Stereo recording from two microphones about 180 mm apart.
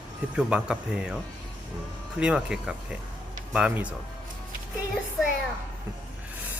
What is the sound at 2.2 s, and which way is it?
Speech, 5° right (ahead or behind).